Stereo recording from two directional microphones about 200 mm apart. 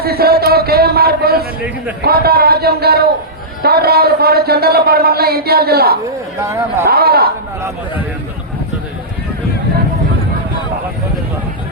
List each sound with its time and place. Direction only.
0.0 s a man's voice: 50° right (ahead or behind)
6.4 s speech: 15° right (ahead or behind)
6.8 s speech: 50° right (ahead or behind)